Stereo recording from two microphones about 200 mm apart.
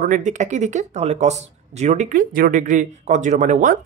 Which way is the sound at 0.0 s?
40° right (ahead or behind).